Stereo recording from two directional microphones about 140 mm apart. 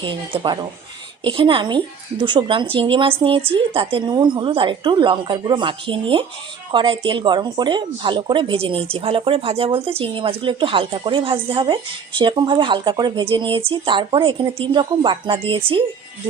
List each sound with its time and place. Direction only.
0.0 s a woman's voice: 35° right (ahead or behind)